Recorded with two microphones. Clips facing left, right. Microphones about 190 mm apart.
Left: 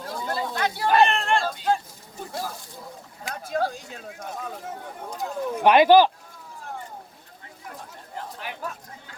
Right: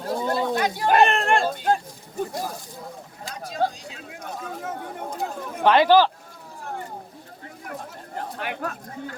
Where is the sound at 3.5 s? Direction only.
55° left (ahead or behind).